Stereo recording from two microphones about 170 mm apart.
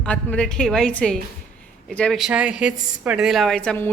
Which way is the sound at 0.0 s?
5° left (ahead or behind).